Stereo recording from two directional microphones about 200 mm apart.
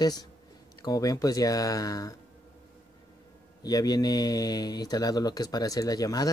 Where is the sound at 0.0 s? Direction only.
20° left (ahead or behind).